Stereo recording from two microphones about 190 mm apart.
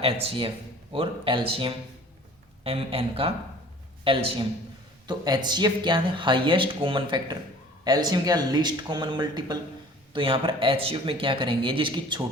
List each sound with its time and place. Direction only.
0.0 s speech: 30° right (ahead or behind)